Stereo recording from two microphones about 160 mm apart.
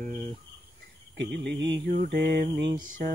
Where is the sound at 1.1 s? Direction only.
90° right.